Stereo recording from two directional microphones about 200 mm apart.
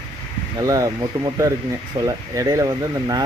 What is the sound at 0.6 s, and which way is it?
A man's voice, 15° right (ahead or behind).